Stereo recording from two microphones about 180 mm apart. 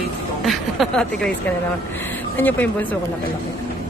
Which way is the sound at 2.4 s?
10° left (ahead or behind).